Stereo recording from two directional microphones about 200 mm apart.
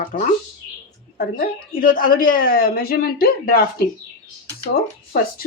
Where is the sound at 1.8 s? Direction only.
45° left (ahead or behind).